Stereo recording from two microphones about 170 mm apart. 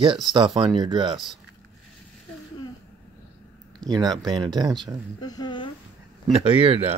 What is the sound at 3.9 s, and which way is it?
Speech, 25° right (ahead or behind).